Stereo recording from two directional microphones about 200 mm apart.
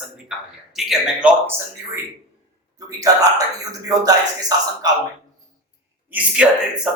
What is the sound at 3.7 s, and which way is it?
Speech, 20° right (ahead or behind).